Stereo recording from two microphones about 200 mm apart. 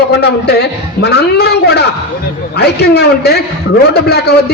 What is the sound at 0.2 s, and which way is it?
A man's voice, 55° left (ahead or behind).